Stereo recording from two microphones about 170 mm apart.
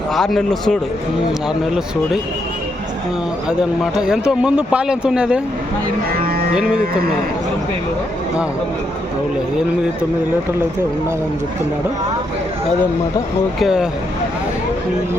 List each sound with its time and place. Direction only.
0.1 s speech: centre (ahead or behind)
3.9 s speech: 5° right (ahead or behind)
6.1 s speech: 60° right (ahead or behind)
13.6 s speech: 5° right (ahead or behind)